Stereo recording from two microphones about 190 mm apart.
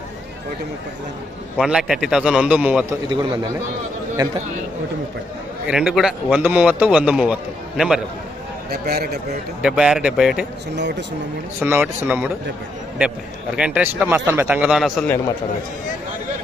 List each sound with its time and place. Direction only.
1.5 s a man's voice: 5° right (ahead or behind)
3.1 s a man's voice: 25° right (ahead or behind)
5.6 s a man's voice: 5° right (ahead or behind)
8.7 s a man's voice: 55° right (ahead or behind)
9.6 s a man's voice: 5° right (ahead or behind)
10.8 s a man's voice: 65° right (ahead or behind)
11.6 s speech: 10° right (ahead or behind)
13.6 s a man's voice: 5° right (ahead or behind)